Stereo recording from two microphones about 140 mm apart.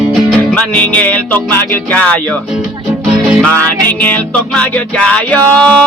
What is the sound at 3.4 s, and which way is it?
Music, 10° left (ahead or behind).